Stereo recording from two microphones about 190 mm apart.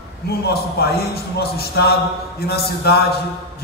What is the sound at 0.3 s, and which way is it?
A man's voice, 55° left (ahead or behind).